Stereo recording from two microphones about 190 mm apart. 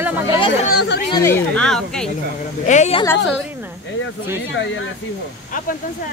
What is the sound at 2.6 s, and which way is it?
Speech, 40° left (ahead or behind).